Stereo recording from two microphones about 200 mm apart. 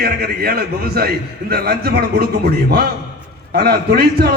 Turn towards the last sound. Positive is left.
turn(degrees=-50)  # may be behind; listen again after turning